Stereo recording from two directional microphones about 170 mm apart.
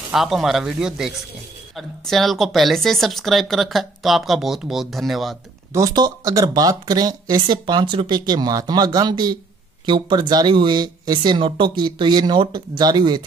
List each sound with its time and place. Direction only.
0.1 s speech: centre (ahead or behind)
5.7 s speech: 20° right (ahead or behind)